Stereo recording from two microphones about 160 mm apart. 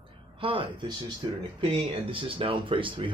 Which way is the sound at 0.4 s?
35° right (ahead or behind).